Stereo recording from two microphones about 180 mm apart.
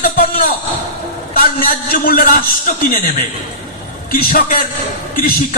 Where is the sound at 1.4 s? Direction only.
55° left (ahead or behind).